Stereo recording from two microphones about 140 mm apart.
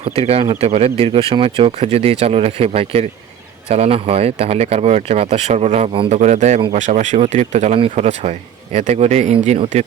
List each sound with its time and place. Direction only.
0.0 s speech: 45° right (ahead or behind)